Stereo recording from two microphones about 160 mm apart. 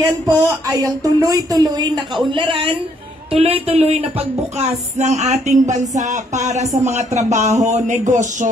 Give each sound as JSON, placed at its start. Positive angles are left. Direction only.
{"t": 0.0, "sound": "speech", "side_deg": -20}